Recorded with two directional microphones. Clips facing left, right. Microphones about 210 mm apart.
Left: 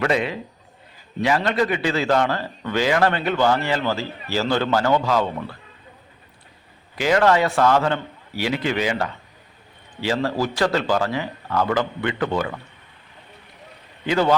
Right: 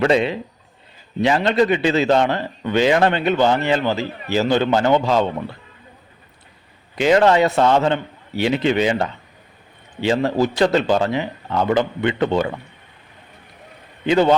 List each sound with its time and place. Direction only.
0.0 s a man's voice: 25° right (ahead or behind)
6.9 s a man's voice: 25° right (ahead or behind)
14.1 s a man's voice: 20° right (ahead or behind)